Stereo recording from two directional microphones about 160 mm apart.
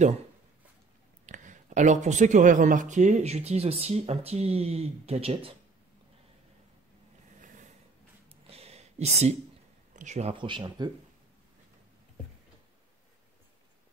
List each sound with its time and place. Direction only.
1.2 s speech: 50° right (ahead or behind)
7.4 s snort: 55° right (ahead or behind)
8.5 s a sound: 40° right (ahead or behind)
9.9 s speech: 45° right (ahead or behind)
10.3 s speech: 30° right (ahead or behind)